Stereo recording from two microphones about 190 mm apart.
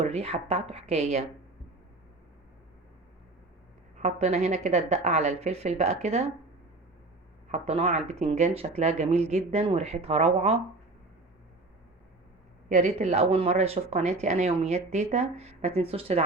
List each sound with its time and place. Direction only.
0.0 s speech: 35° right (ahead or behind)
3.9 s speech: 35° right (ahead or behind)
7.5 s speech: 35° right (ahead or behind)
12.6 s speech: 40° right (ahead or behind)